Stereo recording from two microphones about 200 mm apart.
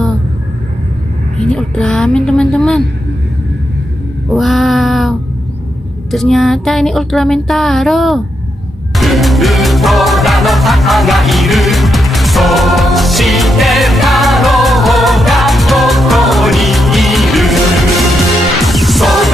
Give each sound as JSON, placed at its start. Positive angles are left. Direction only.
{"t": 1.5, "sound": "music", "side_deg": 5}
{"t": 4.3, "sound": "a sound", "side_deg": 0}
{"t": 6.1, "sound": "music", "side_deg": 0}